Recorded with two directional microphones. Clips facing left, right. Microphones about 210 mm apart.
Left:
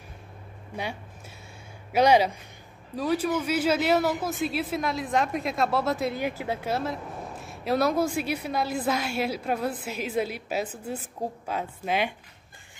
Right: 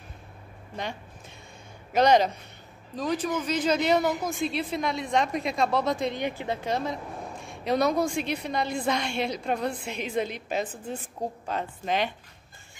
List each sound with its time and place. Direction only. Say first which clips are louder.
1.9 s a woman's voice: even; 10° left (ahead or behind)